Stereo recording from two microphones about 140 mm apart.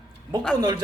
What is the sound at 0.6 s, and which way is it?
Speech, 30° right (ahead or behind).